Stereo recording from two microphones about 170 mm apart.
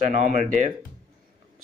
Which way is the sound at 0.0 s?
45° right (ahead or behind).